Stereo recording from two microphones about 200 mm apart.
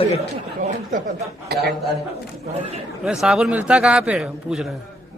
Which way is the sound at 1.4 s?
55° right (ahead or behind).